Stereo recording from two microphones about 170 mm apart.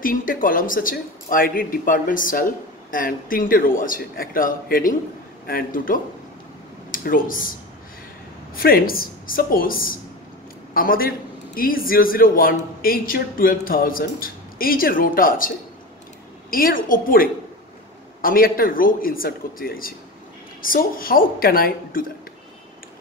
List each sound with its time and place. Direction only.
0.0 s speech: 55° left (ahead or behind)
8.5 s speech: 60° left (ahead or behind)